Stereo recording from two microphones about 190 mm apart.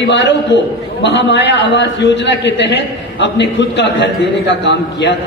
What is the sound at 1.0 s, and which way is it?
A man's voice, 70° left (ahead or behind).